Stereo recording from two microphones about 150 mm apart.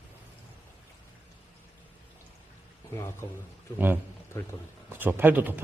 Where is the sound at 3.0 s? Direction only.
15° left (ahead or behind).